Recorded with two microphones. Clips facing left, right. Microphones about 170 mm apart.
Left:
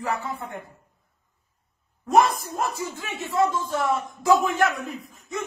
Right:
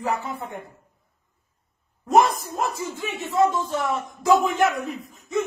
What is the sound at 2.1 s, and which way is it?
Speech, 15° right (ahead or behind).